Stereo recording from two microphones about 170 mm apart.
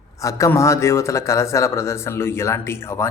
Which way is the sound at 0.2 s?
20° left (ahead or behind).